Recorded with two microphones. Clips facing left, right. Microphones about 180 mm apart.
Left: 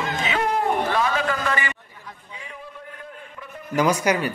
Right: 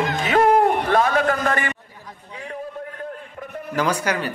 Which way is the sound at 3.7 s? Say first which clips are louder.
Left 2 dB; 10° left (ahead or behind).